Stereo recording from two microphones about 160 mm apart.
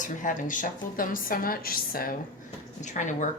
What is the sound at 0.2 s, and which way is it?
A woman's voice, 55° left (ahead or behind).